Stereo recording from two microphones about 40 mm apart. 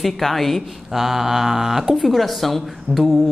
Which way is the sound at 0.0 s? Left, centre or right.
Centre.